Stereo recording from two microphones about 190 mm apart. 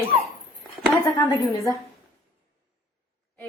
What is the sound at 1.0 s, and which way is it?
Speech, 15° left (ahead or behind).